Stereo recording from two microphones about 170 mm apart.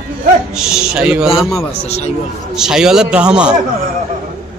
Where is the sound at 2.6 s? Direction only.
5° right (ahead or behind).